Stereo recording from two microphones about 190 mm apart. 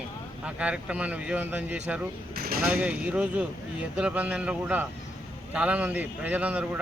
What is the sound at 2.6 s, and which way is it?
A man's voice, 5° right (ahead or behind).